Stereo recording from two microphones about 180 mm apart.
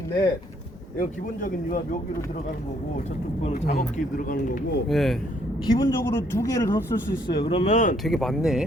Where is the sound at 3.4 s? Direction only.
35° left (ahead or behind).